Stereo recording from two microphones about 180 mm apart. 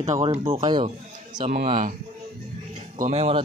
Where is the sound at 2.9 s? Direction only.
40° right (ahead or behind).